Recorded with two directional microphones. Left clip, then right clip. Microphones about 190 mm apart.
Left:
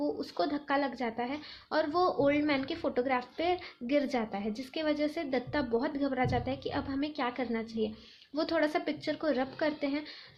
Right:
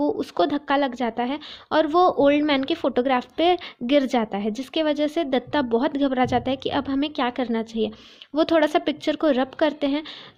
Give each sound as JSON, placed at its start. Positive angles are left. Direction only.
{"t": 0.0, "sound": "a woman's voice", "side_deg": -50}